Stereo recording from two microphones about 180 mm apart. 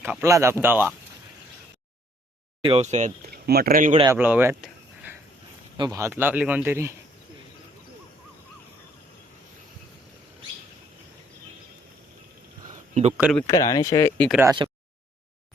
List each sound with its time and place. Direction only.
0.0 s speech: 15° right (ahead or behind)
2.6 s speech: 35° right (ahead or behind)
3.3 s speech: 60° right (ahead or behind)
4.1 s a sound: 10° right (ahead or behind)
5.7 s speech: 20° right (ahead or behind)
12.6 s a sound: 40° right (ahead or behind)
13.5 s speech: 20° left (ahead or behind)
14.4 s speech: 25° right (ahead or behind)